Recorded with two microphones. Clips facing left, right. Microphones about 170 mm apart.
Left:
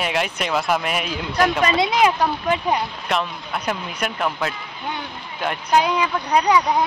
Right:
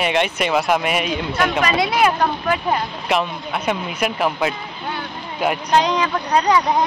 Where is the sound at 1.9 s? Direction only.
15° left (ahead or behind).